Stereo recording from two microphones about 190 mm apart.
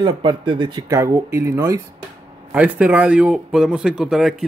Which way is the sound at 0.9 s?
15° right (ahead or behind).